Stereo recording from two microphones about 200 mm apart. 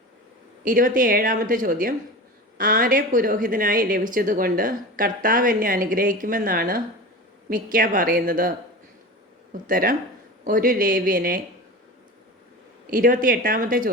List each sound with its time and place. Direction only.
0.6 s a woman's voice: 45° right (ahead or behind)
12.9 s a woman's voice: 45° right (ahead or behind)